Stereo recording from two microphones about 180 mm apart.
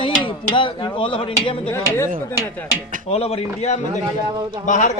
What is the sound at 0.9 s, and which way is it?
Speech, 30° left (ahead or behind).